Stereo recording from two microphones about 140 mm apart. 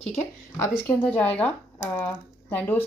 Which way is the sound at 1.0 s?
10° left (ahead or behind).